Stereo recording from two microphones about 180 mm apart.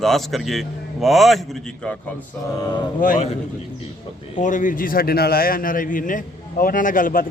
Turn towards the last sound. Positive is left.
turn(degrees=50)  # may be behind; listen again after turning